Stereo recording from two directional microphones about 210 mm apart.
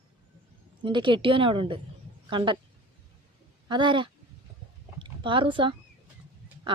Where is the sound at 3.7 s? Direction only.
20° right (ahead or behind).